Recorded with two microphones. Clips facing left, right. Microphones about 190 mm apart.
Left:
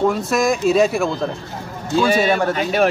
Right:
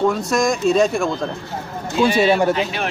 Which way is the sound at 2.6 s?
45° left (ahead or behind).